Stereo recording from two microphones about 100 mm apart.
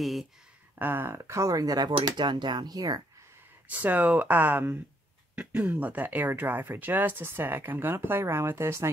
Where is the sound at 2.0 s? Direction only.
50° right (ahead or behind).